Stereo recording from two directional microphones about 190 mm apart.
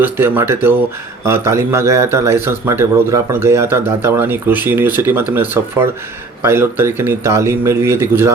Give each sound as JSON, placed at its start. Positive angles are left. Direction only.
{"t": 0.0, "sound": "a man's voice", "side_deg": -10}